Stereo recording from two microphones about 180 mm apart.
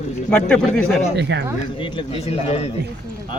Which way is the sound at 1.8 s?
25° left (ahead or behind).